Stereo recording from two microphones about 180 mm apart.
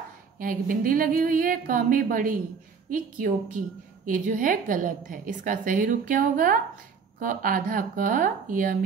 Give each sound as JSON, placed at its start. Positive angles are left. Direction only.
{"t": 0.4, "sound": "a woman's voice", "side_deg": -50}